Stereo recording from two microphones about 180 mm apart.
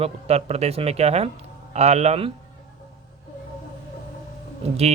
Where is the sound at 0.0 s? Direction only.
35° right (ahead or behind).